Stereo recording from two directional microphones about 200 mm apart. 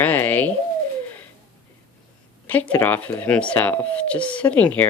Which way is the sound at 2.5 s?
10° left (ahead or behind).